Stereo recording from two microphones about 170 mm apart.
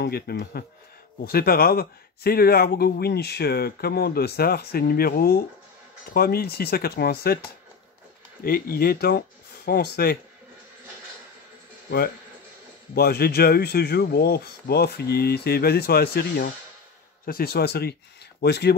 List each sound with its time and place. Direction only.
0.0 s speech: 65° left (ahead or behind)
8.5 s speech: 60° left (ahead or behind)
12.9 s speech: 65° left (ahead or behind)